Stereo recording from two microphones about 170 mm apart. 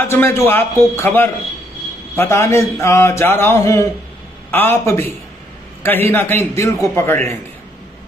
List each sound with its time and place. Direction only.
0.0 s speech: 15° left (ahead or behind)